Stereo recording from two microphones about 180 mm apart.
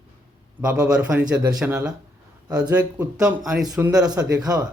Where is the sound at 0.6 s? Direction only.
5° right (ahead or behind).